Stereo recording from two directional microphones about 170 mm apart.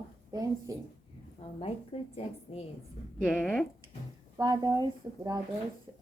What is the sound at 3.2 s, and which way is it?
Speech, 5° left (ahead or behind).